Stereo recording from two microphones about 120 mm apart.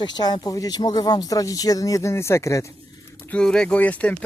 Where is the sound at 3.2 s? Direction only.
10° left (ahead or behind).